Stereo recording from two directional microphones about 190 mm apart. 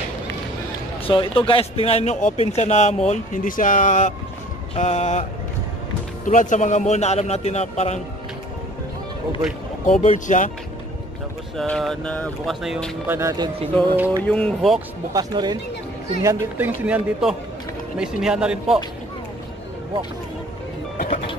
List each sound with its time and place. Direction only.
1.0 s speech: 25° left (ahead or behind)
6.2 s speech: 40° left (ahead or behind)
9.8 s speech: 40° left (ahead or behind)
11.5 s speech: 5° left (ahead or behind)
14.2 s speech: 5° left (ahead or behind)
15.1 s speech: 20° right (ahead or behind); by 18.8 s 5° right (ahead or behind)
21.1 s music: 30° left (ahead or behind)